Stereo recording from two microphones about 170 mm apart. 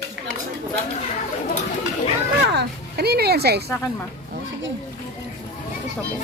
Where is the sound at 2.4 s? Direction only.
80° right.